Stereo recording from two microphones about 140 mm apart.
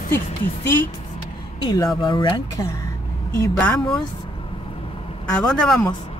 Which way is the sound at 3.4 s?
10° left (ahead or behind).